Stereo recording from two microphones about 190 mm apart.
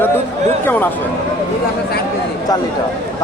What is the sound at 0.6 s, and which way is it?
Speech, 10° left (ahead or behind).